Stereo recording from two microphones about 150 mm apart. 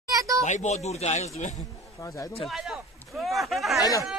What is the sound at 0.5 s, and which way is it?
Speech, 50° left (ahead or behind).